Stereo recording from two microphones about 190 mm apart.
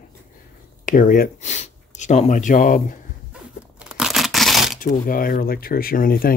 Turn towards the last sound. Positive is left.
turn(degrees=50)  # may be behind; listen again after turning